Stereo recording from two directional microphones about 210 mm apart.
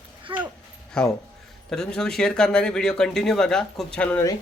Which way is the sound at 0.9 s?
5° left (ahead or behind).